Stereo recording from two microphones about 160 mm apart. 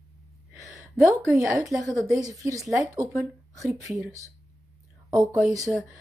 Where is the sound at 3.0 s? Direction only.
20° right (ahead or behind).